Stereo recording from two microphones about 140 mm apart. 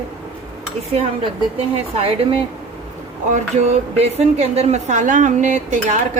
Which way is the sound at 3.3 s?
60° right (ahead or behind).